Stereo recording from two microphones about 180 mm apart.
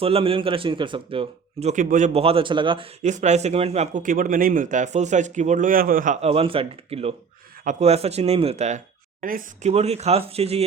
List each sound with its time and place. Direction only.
0.0 s a man's voice: 30° right (ahead or behind)
3.0 s speech: 40° right (ahead or behind)
6.2 s a man's voice: 30° right (ahead or behind)
9.2 s speech: 50° right (ahead or behind)
9.7 s a man's voice: 35° right (ahead or behind)